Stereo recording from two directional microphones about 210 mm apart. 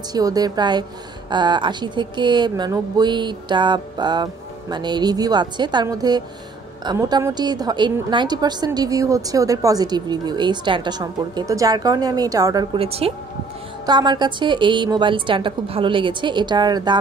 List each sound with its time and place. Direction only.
0.1 s a woman's voice: 20° right (ahead or behind)